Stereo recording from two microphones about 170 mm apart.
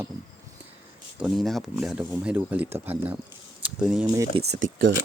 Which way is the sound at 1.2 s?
Centre (ahead or behind).